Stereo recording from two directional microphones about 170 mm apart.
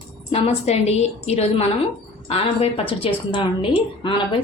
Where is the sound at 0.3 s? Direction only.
40° left (ahead or behind).